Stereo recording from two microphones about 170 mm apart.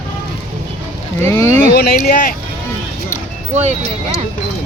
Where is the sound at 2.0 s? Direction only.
55° left (ahead or behind).